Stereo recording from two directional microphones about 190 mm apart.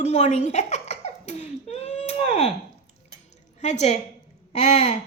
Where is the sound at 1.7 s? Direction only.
35° left (ahead or behind).